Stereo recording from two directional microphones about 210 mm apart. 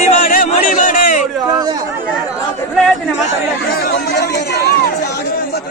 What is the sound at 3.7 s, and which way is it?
Speech, 50° left (ahead or behind).